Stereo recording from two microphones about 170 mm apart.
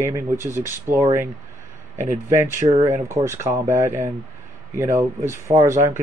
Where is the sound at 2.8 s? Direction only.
15° right (ahead or behind).